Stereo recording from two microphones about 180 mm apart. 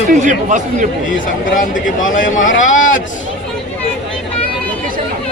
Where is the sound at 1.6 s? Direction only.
45° left (ahead or behind).